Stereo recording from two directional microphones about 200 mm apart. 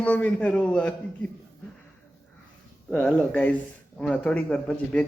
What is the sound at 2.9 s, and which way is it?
A man's voice, 5° left (ahead or behind).